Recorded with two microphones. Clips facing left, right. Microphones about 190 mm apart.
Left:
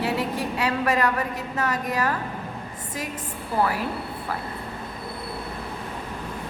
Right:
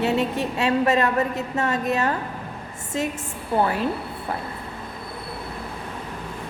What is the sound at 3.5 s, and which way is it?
Speech, 25° right (ahead or behind).